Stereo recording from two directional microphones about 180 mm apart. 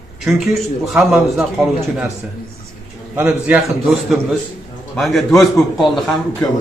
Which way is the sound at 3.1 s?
10° right (ahead or behind).